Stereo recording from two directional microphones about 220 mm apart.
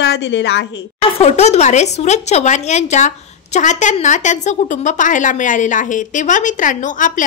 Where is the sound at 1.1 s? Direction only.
30° left (ahead or behind).